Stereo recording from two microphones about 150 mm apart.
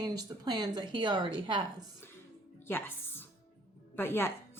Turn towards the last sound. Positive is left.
turn(degrees=15)  # may be behind; listen again after turning